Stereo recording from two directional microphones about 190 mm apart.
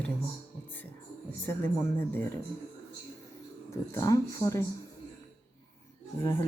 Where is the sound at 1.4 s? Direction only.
10° left (ahead or behind).